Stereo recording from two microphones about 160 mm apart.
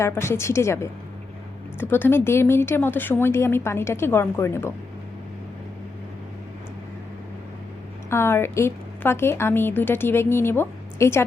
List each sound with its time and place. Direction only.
0.0 s a woman's voice: 15° left (ahead or behind)
8.1 s a woman's voice: 15° left (ahead or behind)